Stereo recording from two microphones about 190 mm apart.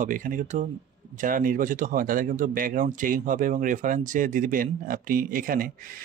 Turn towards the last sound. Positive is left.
turn(degrees=-50)  # may be behind; listen again after turning